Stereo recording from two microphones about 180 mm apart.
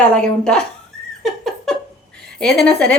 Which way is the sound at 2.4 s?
5° left (ahead or behind).